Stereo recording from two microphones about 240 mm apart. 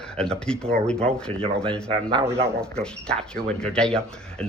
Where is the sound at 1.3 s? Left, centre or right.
Right.